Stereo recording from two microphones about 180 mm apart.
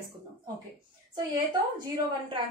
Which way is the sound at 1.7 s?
25° right (ahead or behind).